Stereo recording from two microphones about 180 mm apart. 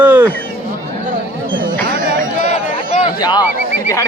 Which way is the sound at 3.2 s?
25° left (ahead or behind).